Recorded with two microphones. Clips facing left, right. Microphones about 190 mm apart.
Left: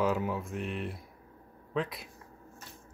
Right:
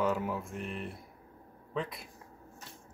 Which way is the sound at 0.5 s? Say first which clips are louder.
Left 3 dB; 90° left.